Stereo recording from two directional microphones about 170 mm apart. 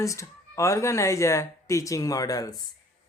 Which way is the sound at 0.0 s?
20° left (ahead or behind).